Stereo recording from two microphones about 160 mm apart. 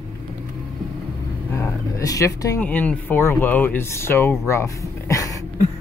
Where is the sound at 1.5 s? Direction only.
20° left (ahead or behind).